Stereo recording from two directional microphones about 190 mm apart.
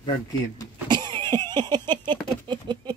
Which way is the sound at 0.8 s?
25° right (ahead or behind).